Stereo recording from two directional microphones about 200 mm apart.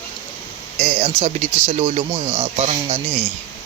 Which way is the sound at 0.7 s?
30° right (ahead or behind).